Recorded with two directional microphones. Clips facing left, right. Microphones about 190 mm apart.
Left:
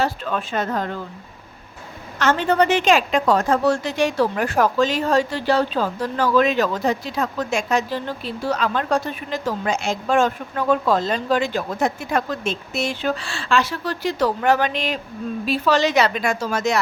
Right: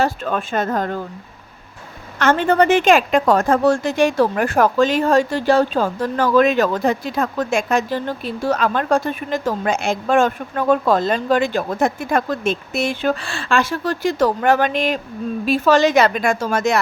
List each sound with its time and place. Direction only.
0.0 s a woman's voice: 50° right (ahead or behind)
2.1 s a woman's voice: 55° right (ahead or behind)